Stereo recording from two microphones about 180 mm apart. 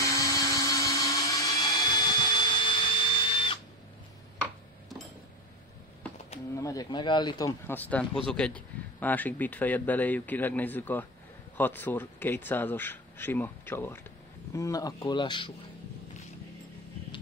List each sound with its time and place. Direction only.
0.0 s blender: 20° left (ahead or behind)
6.5 s speech: 20° left (ahead or behind)